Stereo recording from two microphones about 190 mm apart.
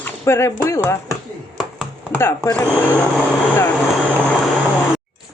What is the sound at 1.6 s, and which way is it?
Chopping, centre (ahead or behind).